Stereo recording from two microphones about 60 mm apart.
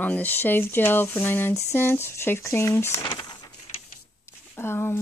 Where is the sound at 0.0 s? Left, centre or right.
Left.